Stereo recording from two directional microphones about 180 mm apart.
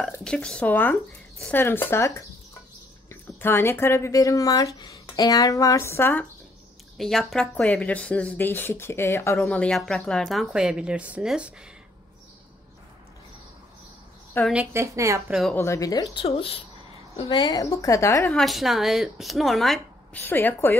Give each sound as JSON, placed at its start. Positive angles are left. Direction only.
{"t": 0.2, "sound": "speech", "side_deg": 5}
{"t": 3.1, "sound": "speech", "side_deg": 15}
{"t": 7.0, "sound": "speech", "side_deg": 0}
{"t": 14.4, "sound": "a woman's voice", "side_deg": -5}
{"t": 15.5, "sound": "a woman's voice", "side_deg": 15}
{"t": 16.3, "sound": "a woman's voice", "side_deg": 30}
{"t": 18.3, "sound": "speech", "side_deg": 0}